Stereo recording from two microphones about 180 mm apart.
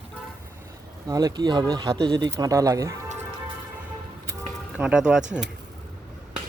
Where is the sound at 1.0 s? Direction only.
20° right (ahead or behind).